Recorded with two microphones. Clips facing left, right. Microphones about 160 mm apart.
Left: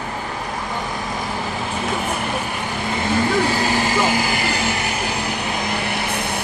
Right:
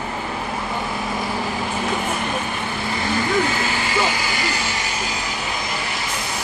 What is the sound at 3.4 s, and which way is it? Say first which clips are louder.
Vehicle: left 4 dB; 35° left (ahead or behind).